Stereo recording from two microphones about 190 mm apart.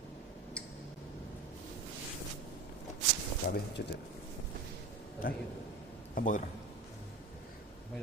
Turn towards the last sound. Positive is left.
turn(degrees=40)  # may be behind; listen again after turning